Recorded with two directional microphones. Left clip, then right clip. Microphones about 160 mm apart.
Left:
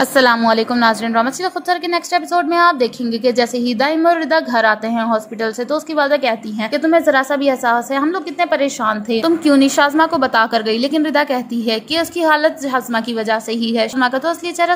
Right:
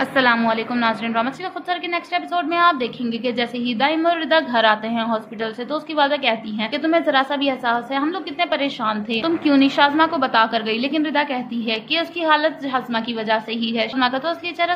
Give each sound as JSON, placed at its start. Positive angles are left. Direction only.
{"t": 0.0, "sound": "a woman's voice", "side_deg": 65}